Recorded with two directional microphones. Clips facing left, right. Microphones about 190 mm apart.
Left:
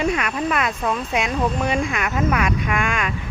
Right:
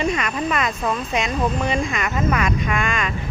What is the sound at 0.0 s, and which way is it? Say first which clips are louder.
Speech: left 1 dB; 5° left (ahead or behind).